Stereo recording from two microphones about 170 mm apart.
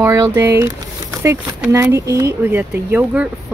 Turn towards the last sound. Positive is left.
turn(degrees=-10)  # may be behind; listen again after turning